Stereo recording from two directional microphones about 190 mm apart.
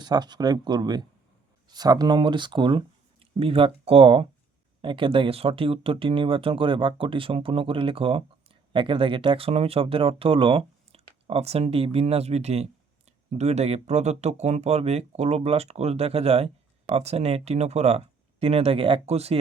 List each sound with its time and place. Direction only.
0.0 s speech: 20° right (ahead or behind)